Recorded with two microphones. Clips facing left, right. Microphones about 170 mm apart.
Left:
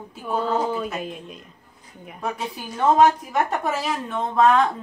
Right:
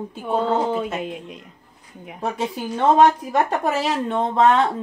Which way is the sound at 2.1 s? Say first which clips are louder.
Right 4 dB; 25° right (ahead or behind).